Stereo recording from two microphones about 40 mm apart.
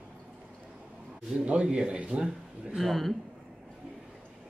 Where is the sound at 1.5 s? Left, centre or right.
Right.